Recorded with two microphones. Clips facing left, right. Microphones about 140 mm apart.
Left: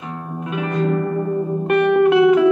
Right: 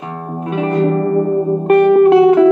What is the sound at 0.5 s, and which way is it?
Music, 30° right (ahead or behind).